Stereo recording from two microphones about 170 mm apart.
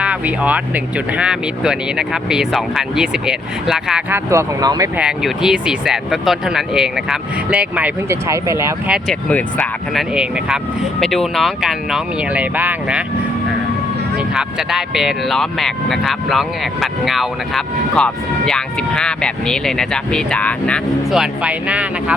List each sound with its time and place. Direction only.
0.0 s speech: 10° right (ahead or behind)
4.3 s speech: 20° right (ahead or behind)
4.9 s speech: 5° right (ahead or behind)
9.3 s speech: 5° left (ahead or behind)
14.2 s speech: 5° right (ahead or behind)